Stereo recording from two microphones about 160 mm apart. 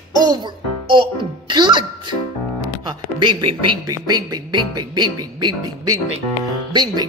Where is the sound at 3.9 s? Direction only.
25° right (ahead or behind).